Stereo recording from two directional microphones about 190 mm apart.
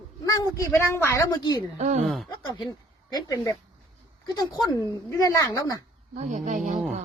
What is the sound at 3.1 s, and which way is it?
Speech, 20° left (ahead or behind).